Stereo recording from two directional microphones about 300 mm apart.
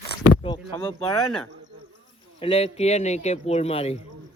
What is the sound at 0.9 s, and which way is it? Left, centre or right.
Speech, centre.